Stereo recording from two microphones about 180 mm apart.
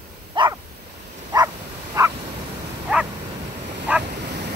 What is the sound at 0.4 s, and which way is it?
Dog, 25° right (ahead or behind).